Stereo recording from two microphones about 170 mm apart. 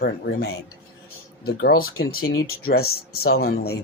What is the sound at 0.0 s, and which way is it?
Speech, 70° left (ahead or behind).